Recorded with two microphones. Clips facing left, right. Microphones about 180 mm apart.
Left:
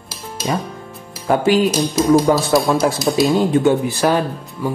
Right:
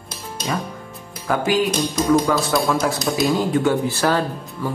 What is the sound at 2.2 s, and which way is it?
Speech, 25° left (ahead or behind).